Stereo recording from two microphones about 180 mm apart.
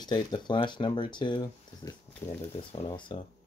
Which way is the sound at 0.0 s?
25° left (ahead or behind).